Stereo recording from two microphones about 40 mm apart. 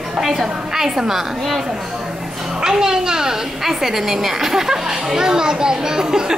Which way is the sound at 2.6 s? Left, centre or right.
Centre.